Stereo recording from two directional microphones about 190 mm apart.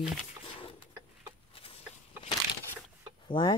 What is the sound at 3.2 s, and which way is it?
Speech, 25° left (ahead or behind).